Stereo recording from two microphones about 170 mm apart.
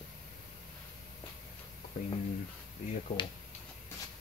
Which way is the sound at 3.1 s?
45° left (ahead or behind).